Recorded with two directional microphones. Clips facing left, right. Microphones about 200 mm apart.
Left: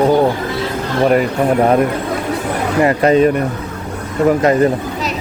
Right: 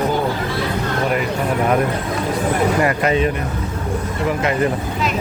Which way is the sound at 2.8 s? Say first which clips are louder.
Left 6 dB; 35° left (ahead or behind).